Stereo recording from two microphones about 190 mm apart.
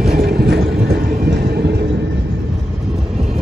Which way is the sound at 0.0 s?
55° right (ahead or behind).